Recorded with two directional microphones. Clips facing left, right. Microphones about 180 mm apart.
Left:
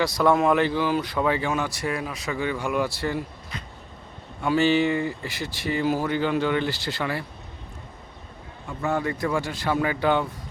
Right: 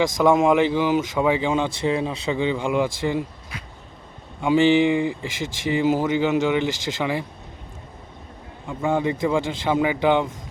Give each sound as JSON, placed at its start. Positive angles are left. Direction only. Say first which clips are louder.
{"t": 0.0, "sound": "speech", "louder": "right 3 dB", "side_deg": -15}
{"t": 4.4, "sound": "speech", "louder": "right 4 dB", "side_deg": -15}
{"t": 8.6, "sound": "speech", "louder": "right 4 dB", "side_deg": -15}